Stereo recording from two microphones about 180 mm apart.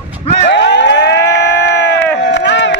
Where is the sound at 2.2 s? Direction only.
80° left.